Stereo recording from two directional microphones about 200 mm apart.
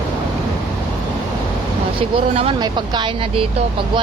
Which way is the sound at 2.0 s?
25° right (ahead or behind).